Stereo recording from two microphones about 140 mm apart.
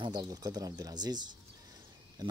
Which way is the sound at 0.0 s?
30° right (ahead or behind).